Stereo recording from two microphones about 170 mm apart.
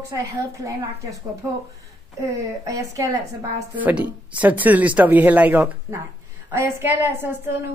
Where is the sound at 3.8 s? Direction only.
10° right (ahead or behind).